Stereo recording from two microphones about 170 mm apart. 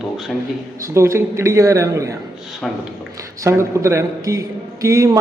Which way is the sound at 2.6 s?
Centre (ahead or behind).